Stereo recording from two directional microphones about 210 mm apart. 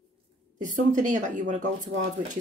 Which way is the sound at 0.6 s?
35° right (ahead or behind).